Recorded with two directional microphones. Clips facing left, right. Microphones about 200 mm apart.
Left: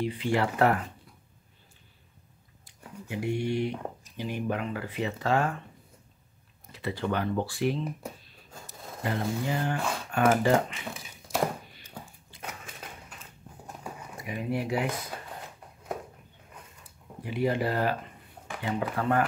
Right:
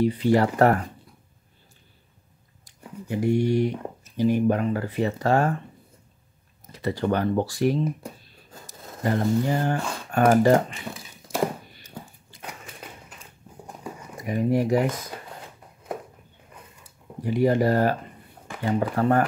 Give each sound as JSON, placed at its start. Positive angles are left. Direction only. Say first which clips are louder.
{"t": 0.0, "sound": "speech", "louder": "right 7 dB", "side_deg": -40}
{"t": 2.6, "sound": "speech", "louder": "right 5 dB", "side_deg": -40}
{"t": 6.7, "sound": "speech", "louder": "right 6 dB", "side_deg": -40}
{"t": 9.0, "sound": "speech", "louder": "right 7 dB", "side_deg": -45}
{"t": 12.3, "sound": "a sound", "louder": "even", "side_deg": -45}
{"t": 14.1, "sound": "speech", "louder": "right 9 dB", "side_deg": -45}
{"t": 17.2, "sound": "speech", "louder": "right 7 dB", "side_deg": -40}